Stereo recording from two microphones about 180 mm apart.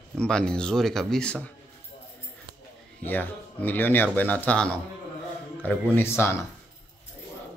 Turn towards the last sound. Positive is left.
turn(degrees=15)  # may be behind; listen again after turning